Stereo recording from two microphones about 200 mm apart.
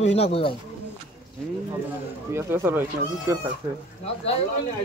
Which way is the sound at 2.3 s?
15° right (ahead or behind).